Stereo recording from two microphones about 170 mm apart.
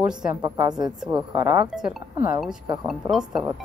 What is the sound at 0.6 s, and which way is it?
Speech, 25° right (ahead or behind).